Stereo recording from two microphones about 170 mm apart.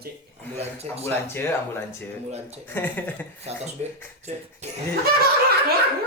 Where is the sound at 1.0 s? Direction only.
15° left (ahead or behind).